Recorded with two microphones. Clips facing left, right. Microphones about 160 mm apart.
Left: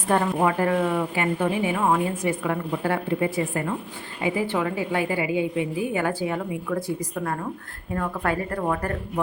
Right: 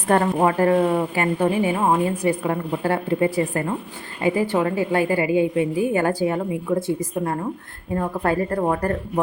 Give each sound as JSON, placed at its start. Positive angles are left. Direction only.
{"t": 0.3, "sound": "a woman's voice", "side_deg": -35}
{"t": 6.7, "sound": "a woman's voice", "side_deg": -25}